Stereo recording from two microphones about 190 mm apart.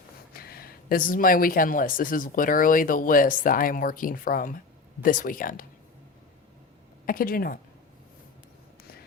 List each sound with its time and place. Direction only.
0.3 s speech: 50° left (ahead or behind)
7.0 s speech: 50° left (ahead or behind)